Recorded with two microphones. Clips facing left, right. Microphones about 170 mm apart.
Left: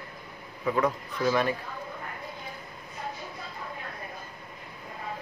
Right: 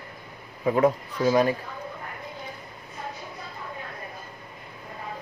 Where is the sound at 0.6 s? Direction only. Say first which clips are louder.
Right 5 dB; 40° right (ahead or behind).